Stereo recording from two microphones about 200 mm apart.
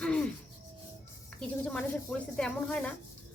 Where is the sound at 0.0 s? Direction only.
5° left (ahead or behind).